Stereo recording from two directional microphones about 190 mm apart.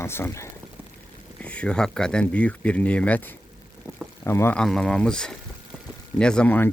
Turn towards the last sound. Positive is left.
turn(degrees=10)  # may be behind; listen again after turning